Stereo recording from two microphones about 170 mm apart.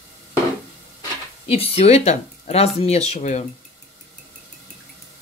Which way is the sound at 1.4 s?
35° left (ahead or behind).